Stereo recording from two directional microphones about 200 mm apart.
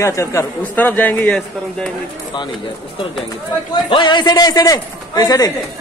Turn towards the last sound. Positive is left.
turn(degrees=20)  # may be behind; listen again after turning